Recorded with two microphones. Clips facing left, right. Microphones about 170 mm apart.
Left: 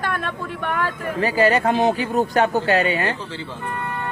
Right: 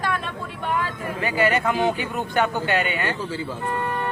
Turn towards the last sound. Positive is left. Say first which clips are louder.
# left 4 dB
turn(degrees=35)  # may be behind; listen again after turning